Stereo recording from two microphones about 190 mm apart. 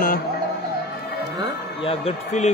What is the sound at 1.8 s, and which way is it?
Speech, 30° left (ahead or behind).